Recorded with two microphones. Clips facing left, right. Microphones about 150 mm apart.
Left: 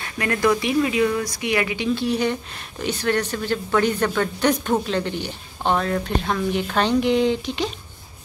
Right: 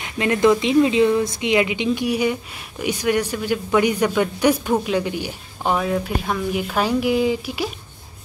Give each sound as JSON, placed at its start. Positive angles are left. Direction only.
{"t": 0.0, "sound": "speech", "side_deg": -20}